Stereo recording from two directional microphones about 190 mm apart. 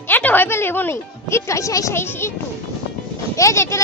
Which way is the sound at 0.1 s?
10° left (ahead or behind).